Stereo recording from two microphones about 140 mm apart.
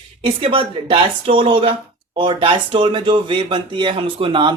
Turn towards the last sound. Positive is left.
turn(degrees=-35)  # may be behind; listen again after turning